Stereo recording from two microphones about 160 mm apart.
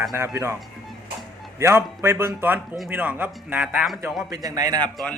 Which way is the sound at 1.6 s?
15° right (ahead or behind).